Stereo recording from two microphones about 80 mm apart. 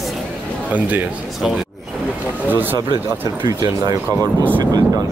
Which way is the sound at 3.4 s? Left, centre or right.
Right.